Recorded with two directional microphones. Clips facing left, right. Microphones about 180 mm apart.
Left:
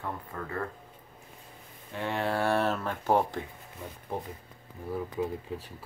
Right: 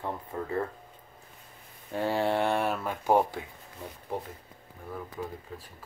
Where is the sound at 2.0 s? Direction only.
35° right (ahead or behind); by 3.4 s 10° right (ahead or behind).